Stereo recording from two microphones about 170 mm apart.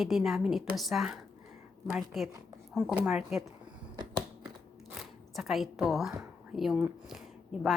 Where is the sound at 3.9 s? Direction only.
25° right (ahead or behind).